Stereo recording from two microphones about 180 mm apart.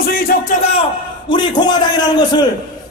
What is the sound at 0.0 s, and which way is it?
Music, 55° left (ahead or behind).